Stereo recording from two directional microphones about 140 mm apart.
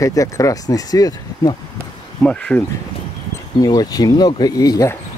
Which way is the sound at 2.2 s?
10° left (ahead or behind).